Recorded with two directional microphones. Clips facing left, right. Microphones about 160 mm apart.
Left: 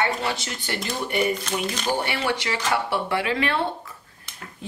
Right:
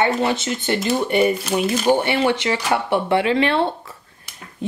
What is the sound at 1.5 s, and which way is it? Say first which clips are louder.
Speech: right 7 dB; 5° right (ahead or behind).